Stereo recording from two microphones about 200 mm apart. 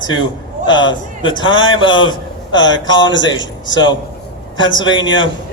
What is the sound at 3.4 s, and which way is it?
Speech, 65° left (ahead or behind).